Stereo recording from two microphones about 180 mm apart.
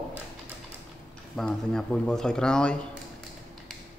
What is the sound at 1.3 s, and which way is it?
A man's voice, 5° left (ahead or behind).